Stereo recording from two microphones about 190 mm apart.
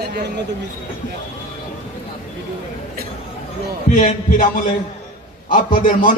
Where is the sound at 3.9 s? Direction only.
45° left (ahead or behind).